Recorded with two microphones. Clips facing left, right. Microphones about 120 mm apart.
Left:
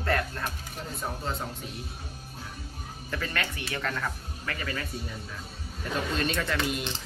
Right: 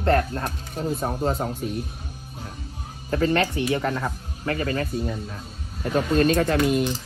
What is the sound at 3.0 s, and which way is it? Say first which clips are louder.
Speech: right 12 dB; 35° right (ahead or behind).